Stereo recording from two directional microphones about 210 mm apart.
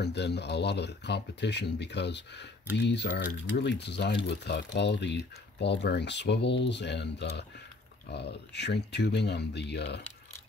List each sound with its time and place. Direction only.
0.0 s speech: 55° left (ahead or behind)